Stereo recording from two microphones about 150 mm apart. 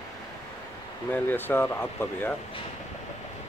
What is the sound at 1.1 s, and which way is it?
Speech, 15° left (ahead or behind).